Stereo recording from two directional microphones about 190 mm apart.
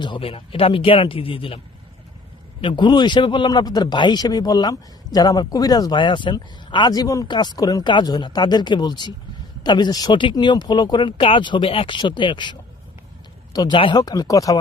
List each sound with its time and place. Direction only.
0.0 s a man's voice: 25° left (ahead or behind)